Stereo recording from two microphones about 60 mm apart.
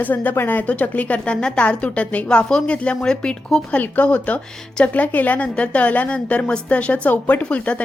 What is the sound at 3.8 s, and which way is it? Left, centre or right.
A woman's voice, left.